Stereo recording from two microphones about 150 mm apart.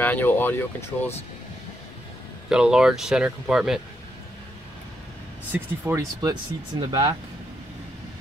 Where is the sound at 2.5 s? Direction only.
5° right (ahead or behind).